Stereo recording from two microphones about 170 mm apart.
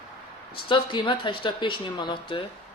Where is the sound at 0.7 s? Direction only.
30° left (ahead or behind).